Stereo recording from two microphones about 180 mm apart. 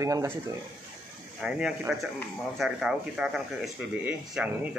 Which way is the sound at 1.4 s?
5° right (ahead or behind).